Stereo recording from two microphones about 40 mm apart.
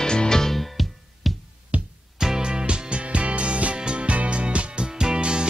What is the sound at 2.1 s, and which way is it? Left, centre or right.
Music, centre.